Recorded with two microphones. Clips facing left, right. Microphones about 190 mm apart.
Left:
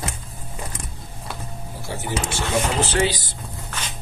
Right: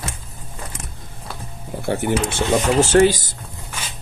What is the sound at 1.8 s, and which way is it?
Speech, 60° right (ahead or behind).